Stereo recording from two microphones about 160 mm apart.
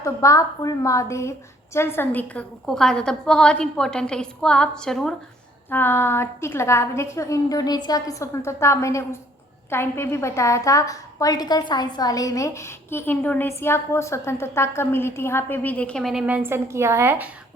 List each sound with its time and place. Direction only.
0.0 s a woman's voice: 20° left (ahead or behind); by 5.1 s 5° left (ahead or behind)
5.7 s a woman's voice: 15° left (ahead or behind); by 17.2 s 15° right (ahead or behind)